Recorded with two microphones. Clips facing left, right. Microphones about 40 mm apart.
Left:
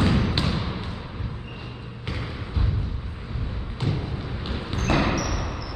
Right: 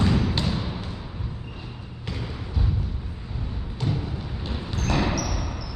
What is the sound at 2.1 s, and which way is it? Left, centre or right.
Basketball bounce, centre.